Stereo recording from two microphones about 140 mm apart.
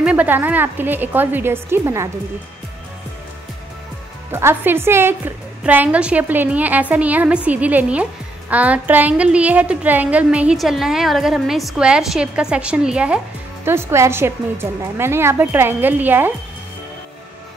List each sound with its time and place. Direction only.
0.0 s a woman's voice: 10° right (ahead or behind)
4.3 s a woman's voice: 15° right (ahead or behind)